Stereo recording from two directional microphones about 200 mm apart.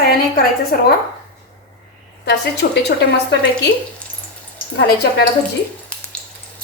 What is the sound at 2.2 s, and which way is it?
A woman's voice, 55° left (ahead or behind).